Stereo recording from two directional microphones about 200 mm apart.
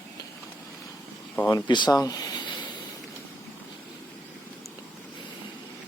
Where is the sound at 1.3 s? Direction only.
15° left (ahead or behind).